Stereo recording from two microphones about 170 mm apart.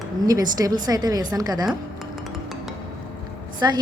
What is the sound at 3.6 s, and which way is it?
Speech, 25° right (ahead or behind).